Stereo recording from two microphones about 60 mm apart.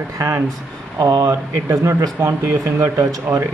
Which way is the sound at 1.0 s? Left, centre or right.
Right.